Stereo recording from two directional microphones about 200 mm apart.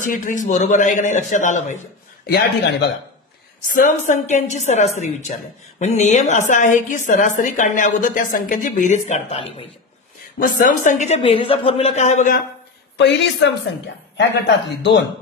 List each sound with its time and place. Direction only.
0.0 s a woman's voice: 40° left (ahead or behind)
2.2 s a woman's voice: 55° left (ahead or behind)
3.7 s a woman's voice: 40° left (ahead or behind)
10.4 s a woman's voice: 40° left (ahead or behind)
12.9 s a woman's voice: 60° left (ahead or behind)